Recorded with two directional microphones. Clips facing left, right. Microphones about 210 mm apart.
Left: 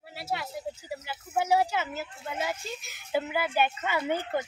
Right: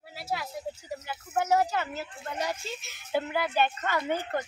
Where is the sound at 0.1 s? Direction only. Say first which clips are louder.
Even; 5° left (ahead or behind).